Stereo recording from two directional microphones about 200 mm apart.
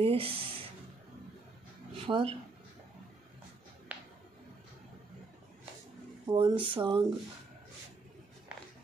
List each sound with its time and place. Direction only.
0.0 s speech: 25° right (ahead or behind)
2.0 s speech: 25° right (ahead or behind)
3.9 s music: 10° right (ahead or behind)
6.2 s speech: 20° right (ahead or behind)